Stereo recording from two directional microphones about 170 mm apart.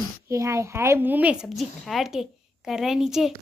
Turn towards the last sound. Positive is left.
turn(degrees=-5)  # may be behind; listen again after turning